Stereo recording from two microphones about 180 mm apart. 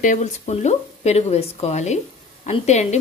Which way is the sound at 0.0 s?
40° left (ahead or behind).